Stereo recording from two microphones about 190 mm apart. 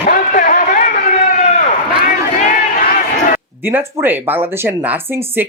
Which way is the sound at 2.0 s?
45° left (ahead or behind).